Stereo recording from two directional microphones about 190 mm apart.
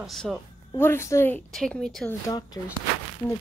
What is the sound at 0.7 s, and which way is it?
A woman's voice, 10° left (ahead or behind).